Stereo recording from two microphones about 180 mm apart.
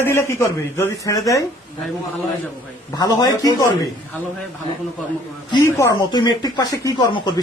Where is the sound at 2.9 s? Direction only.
20° left (ahead or behind).